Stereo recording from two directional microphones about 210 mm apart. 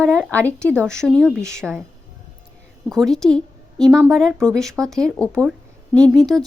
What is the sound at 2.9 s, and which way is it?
A woman's voice, centre (ahead or behind).